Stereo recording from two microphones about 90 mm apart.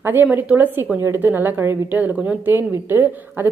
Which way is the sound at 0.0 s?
25° right (ahead or behind).